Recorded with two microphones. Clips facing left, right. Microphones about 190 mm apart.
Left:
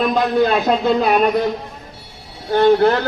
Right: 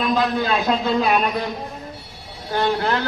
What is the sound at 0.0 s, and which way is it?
Speech, 40° left (ahead or behind).